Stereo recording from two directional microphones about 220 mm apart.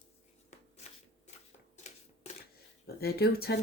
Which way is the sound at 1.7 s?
30° left (ahead or behind).